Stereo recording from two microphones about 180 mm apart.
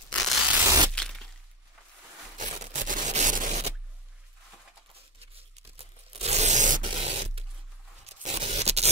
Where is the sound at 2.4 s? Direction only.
45° right (ahead or behind).